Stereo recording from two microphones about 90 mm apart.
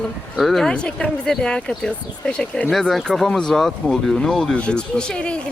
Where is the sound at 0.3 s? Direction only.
5° left (ahead or behind).